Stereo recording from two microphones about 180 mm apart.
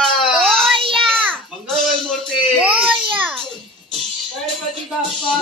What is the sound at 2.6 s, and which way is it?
Baby cry, 10° right (ahead or behind).